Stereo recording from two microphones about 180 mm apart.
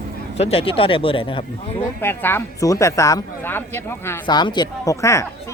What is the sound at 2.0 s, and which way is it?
Speech, 10° left (ahead or behind).